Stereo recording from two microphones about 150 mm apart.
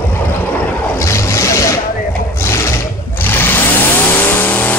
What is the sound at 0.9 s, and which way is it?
Vehicle, 20° left (ahead or behind).